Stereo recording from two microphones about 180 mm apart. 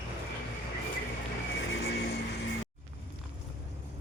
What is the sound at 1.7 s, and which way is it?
Vehicle, 65° left (ahead or behind).